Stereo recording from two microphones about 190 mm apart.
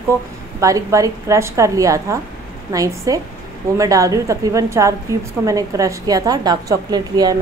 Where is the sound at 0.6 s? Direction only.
15° right (ahead or behind).